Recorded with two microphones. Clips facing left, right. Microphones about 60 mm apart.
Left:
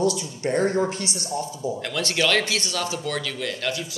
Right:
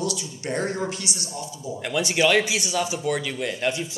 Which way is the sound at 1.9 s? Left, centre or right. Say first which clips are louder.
Right 3 dB; centre.